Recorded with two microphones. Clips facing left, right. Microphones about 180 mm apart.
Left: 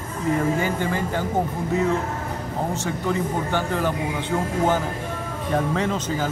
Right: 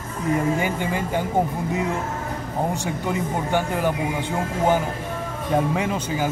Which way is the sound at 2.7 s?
15° right (ahead or behind).